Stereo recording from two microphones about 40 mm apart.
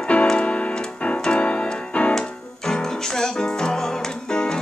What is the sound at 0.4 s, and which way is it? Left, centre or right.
Keyboard, left.